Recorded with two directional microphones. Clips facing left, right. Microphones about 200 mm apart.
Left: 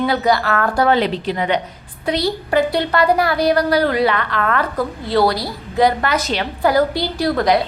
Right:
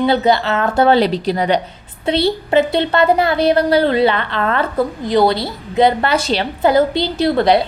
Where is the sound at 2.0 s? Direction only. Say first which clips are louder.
Right 3 dB; 25° right (ahead or behind).